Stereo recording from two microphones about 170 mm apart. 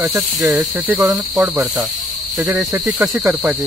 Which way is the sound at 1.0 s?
15° right (ahead or behind).